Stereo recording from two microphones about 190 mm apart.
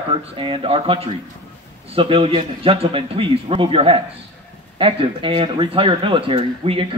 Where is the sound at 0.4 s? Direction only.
30° right (ahead or behind).